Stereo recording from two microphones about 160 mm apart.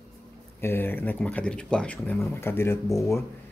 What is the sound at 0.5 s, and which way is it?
Speech, 15° left (ahead or behind).